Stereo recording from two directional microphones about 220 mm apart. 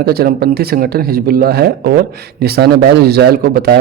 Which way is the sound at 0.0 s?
45° right (ahead or behind).